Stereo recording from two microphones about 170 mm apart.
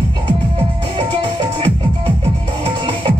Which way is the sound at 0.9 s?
30° right (ahead or behind).